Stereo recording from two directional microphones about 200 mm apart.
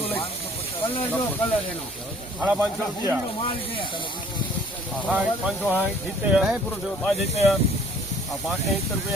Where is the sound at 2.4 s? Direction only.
5° right (ahead or behind).